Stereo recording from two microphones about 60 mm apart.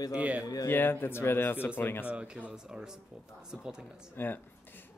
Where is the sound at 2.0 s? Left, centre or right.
Right.